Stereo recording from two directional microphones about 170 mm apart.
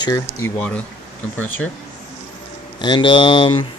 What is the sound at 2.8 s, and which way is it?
Speech, 25° left (ahead or behind).